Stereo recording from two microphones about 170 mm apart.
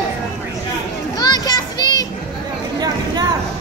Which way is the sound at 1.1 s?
25° left (ahead or behind).